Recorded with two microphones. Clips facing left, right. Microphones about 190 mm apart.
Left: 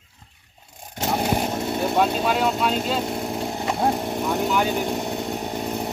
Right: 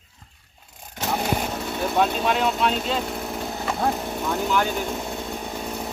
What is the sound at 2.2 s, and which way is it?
Speech, 5° left (ahead or behind).